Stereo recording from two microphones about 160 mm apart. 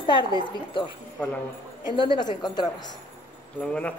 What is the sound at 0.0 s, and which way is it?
A woman's voice, 30° left (ahead or behind).